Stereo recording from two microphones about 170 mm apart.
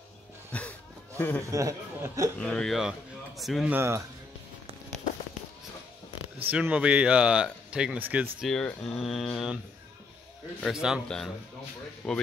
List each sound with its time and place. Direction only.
0.5 s a sound: 5° left (ahead or behind)
1.5 s speech: 20° right (ahead or behind)
2.3 s a man's voice: 5° left (ahead or behind)
3.7 s speech: 15° right (ahead or behind)
6.5 s speech: 5° right (ahead or behind)
8.4 s speech: 5° left (ahead or behind)
10.6 s speech: 5° right (ahead or behind)